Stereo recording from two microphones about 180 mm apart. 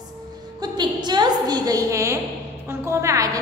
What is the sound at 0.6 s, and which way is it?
A woman's voice, 25° right (ahead or behind).